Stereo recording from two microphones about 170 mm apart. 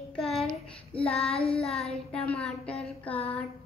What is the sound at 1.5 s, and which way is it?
Child singing, 5° left (ahead or behind).